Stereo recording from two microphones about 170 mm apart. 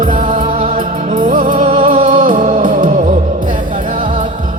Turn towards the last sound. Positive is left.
turn(degrees=-45)  # may be behind; listen again after turning